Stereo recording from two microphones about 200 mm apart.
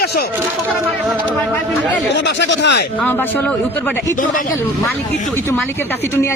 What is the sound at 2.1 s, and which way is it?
Speech, 60° left (ahead or behind).